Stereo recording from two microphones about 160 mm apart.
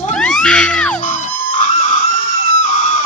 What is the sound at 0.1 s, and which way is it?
Music, 5° left (ahead or behind).